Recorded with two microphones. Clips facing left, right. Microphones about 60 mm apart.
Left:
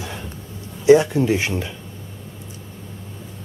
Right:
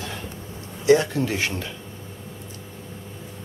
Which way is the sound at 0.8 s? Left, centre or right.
Centre.